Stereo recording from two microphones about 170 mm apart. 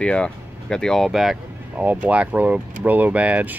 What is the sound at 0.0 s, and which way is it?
Speech, 5° left (ahead or behind).